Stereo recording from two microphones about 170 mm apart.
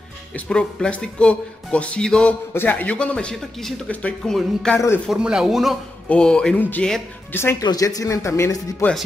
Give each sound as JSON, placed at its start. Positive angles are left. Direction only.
{"t": 0.5, "sound": "speech", "side_deg": 5}
{"t": 4.7, "sound": "speech", "side_deg": 15}
{"t": 5.0, "sound": "speech", "side_deg": -5}
{"t": 7.6, "sound": "speech", "side_deg": 20}